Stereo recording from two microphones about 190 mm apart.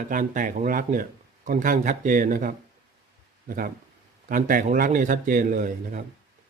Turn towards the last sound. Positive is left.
turn(degrees=-45)  # may be behind; listen again after turning